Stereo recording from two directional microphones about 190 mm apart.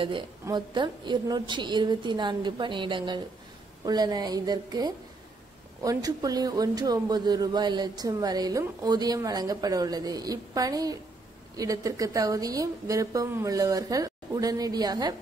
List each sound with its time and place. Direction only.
0.0 s a man's voice: 25° right (ahead or behind)